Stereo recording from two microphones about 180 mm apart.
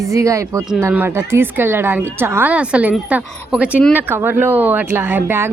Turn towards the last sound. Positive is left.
turn(degrees=-10)  # may be behind; listen again after turning